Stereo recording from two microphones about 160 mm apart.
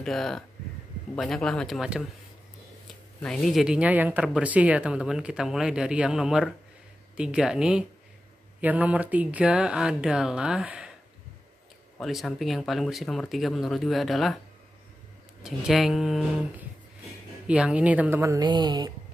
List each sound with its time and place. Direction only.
0.0 s speech: centre (ahead or behind)
3.2 s speech: centre (ahead or behind)
12.0 s speech: centre (ahead or behind)
15.4 s speech: centre (ahead or behind); by 18.9 s 25° right (ahead or behind)